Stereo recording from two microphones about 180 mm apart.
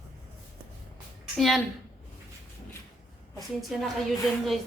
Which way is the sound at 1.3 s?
Centre (ahead or behind).